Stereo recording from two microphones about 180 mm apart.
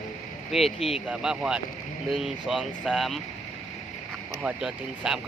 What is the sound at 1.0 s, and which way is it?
Speech, 5° right (ahead or behind).